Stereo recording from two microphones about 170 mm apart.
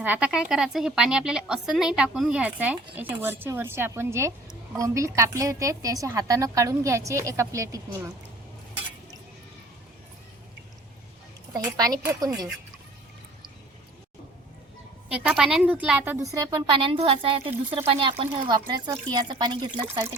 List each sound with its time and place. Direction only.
0.0 s a woman's voice: 10° right (ahead or behind)
11.5 s a woman's voice: 20° right (ahead or behind)
15.1 s a woman's voice: 5° right (ahead or behind)
16.3 s a woman's voice: 25° right (ahead or behind)
19.9 s speech: 15° right (ahead or behind)